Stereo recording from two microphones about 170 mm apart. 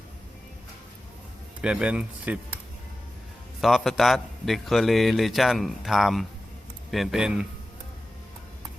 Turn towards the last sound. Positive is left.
turn(degrees=-5)  # may be behind; listen again after turning